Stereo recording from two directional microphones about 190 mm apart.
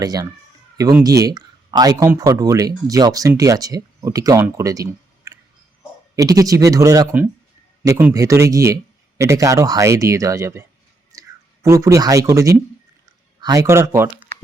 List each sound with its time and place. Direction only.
0.0 s speech: 20° right (ahead or behind)